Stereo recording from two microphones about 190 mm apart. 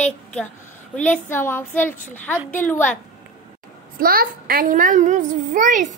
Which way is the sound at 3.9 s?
50° right (ahead or behind).